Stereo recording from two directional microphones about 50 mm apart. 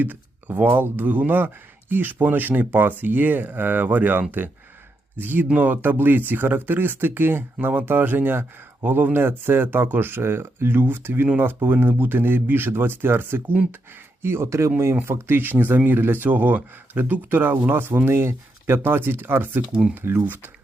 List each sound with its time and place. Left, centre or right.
0.0 s speech: right
14.2 s speech: right
15.0 s speech: right
15.4 s speech: right
18.8 s speech: right